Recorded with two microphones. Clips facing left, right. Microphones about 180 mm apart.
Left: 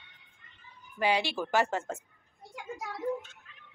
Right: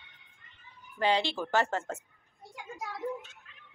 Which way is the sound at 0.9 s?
10° left (ahead or behind).